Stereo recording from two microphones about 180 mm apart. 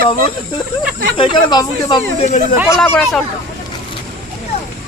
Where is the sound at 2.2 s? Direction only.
40° left (ahead or behind).